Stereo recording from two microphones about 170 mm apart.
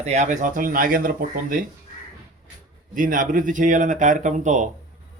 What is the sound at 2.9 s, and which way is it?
Speech, 50° right (ahead or behind).